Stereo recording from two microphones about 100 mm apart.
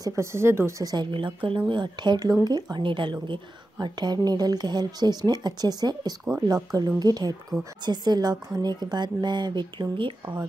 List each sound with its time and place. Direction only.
0.0 s speech: 30° right (ahead or behind)
0.9 s a woman's voice: 60° right (ahead or behind)